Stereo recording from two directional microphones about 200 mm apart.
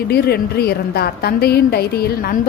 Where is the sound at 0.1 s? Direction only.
50° left (ahead or behind).